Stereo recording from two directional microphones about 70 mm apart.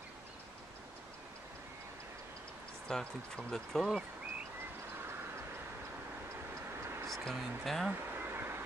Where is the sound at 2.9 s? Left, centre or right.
Centre.